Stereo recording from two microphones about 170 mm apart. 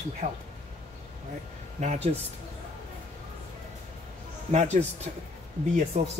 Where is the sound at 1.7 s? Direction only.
40° right (ahead or behind).